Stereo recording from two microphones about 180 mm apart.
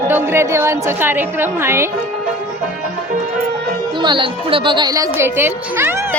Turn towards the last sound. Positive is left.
turn(degrees=-15)  # may be behind; listen again after turning